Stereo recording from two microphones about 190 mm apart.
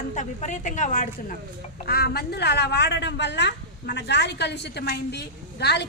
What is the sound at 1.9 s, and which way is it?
A woman's voice, 55° left (ahead or behind).